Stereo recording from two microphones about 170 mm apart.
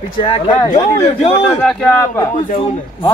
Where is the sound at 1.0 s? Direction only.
35° left (ahead or behind).